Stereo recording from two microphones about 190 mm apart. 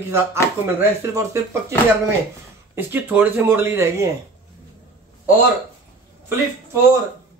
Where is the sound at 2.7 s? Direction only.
10° right (ahead or behind).